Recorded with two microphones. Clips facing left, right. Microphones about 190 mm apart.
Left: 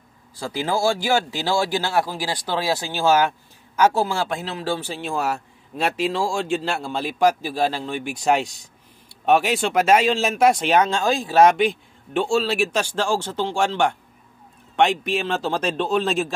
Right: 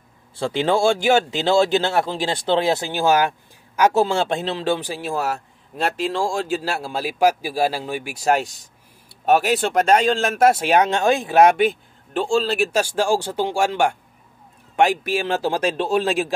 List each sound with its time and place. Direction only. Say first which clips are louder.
0.4 s a man's voice: right 4 dB; 25° right (ahead or behind)
4.0 s a man's voice: right 4 dB; 25° right (ahead or behind)
10.9 s a man's voice: right 3 dB; 20° right (ahead or behind)